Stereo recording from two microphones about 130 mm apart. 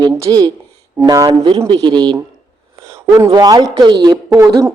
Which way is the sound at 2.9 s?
25° right (ahead or behind).